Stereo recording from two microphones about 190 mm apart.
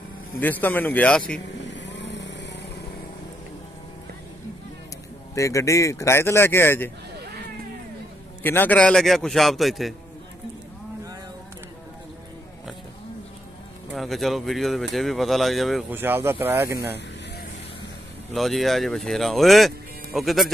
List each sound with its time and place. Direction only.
0.4 s speech: 10° left (ahead or behind)
1.7 s vehicle: 70° left (ahead or behind)
5.3 s speech: 15° left (ahead or behind)
8.4 s speech: 10° left (ahead or behind)
13.9 s speech: centre (ahead or behind)
15.9 s speech: 10° right (ahead or behind)
18.3 s speech: centre (ahead or behind)